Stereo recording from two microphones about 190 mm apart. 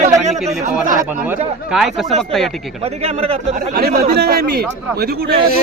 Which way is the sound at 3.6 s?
55° right (ahead or behind).